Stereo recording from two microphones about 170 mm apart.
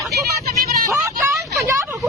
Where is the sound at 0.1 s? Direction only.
65° right (ahead or behind).